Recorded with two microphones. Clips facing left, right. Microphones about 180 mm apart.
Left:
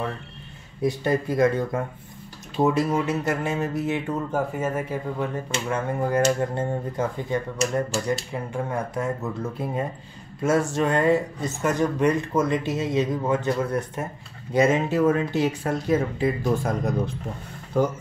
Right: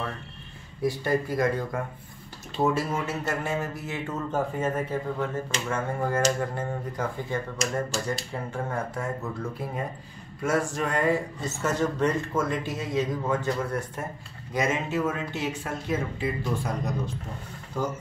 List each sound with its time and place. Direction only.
0.8 s speech: 20° left (ahead or behind)
8.9 s speech: 20° left (ahead or behind)
14.5 s speech: 30° left (ahead or behind); by 17.9 s 60° left (ahead or behind)